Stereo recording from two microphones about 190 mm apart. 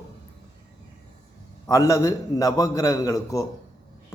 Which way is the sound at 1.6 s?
15° left (ahead or behind).